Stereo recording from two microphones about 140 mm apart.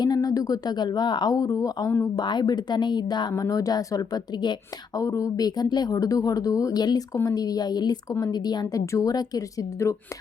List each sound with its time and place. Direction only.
0.0 s speech: 25° left (ahead or behind)
2.2 s speech: 30° left (ahead or behind)